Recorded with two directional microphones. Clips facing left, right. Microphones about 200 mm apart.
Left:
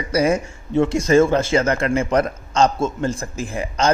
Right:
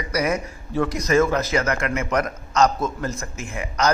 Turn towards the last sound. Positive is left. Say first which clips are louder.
# left 3 dB
turn(degrees=30)  # may be behind; listen again after turning